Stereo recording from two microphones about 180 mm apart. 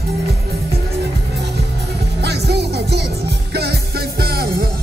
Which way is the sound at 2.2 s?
65° right (ahead or behind).